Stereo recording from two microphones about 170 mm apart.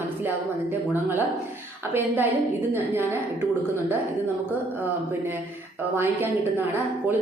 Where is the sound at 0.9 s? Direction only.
10° right (ahead or behind).